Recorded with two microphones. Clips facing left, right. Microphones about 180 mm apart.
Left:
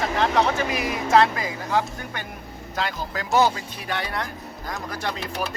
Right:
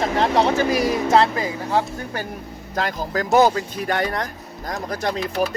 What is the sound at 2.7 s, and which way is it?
Speech, 45° right (ahead or behind).